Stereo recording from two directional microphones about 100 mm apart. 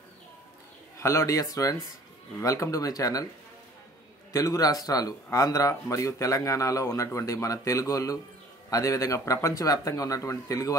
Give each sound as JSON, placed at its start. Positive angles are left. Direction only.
{"t": 0.9, "sound": "speech", "side_deg": 30}
{"t": 4.3, "sound": "speech", "side_deg": 35}